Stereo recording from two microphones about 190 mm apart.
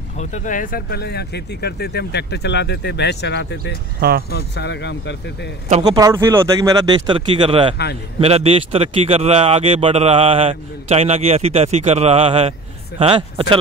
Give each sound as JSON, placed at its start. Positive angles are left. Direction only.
{"t": 0.2, "sound": "speech", "side_deg": 40}
{"t": 5.9, "sound": "speech", "side_deg": -15}
{"t": 7.7, "sound": "speech", "side_deg": 60}
{"t": 8.2, "sound": "speech", "side_deg": -30}